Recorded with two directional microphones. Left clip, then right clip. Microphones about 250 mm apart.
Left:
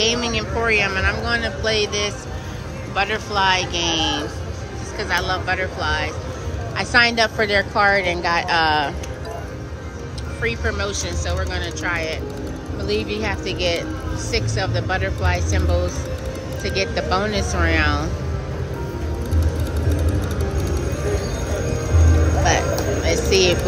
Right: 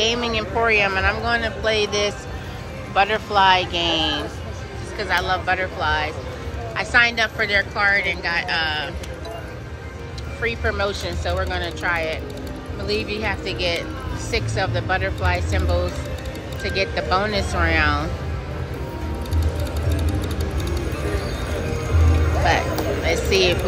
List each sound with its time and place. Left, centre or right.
0.0 s a woman's voice: centre
10.4 s a woman's voice: centre
23.0 s a woman's voice: centre